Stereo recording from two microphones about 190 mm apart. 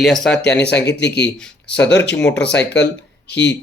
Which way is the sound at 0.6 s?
65° left (ahead or behind).